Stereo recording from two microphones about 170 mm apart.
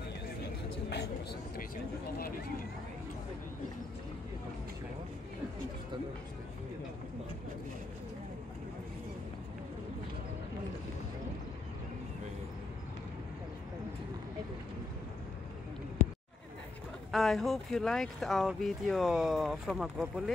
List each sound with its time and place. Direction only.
0.8 s speech: 75° left (ahead or behind)
17.1 s speech: centre (ahead or behind)